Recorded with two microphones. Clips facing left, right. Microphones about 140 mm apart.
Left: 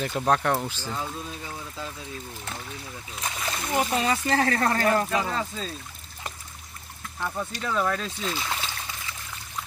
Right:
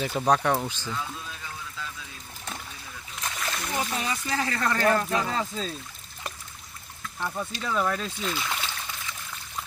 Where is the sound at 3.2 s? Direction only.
Centre (ahead or behind).